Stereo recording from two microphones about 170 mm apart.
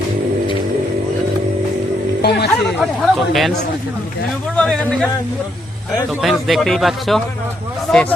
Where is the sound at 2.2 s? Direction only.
80° left.